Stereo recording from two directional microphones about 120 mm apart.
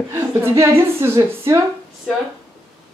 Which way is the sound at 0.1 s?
20° right (ahead or behind).